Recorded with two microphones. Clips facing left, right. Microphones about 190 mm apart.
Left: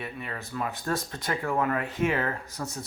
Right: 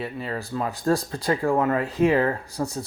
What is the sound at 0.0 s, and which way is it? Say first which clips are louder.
Speech: right 7 dB; 30° right (ahead or behind).